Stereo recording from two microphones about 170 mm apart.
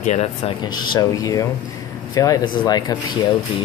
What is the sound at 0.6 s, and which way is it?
Speech, 25° left (ahead or behind).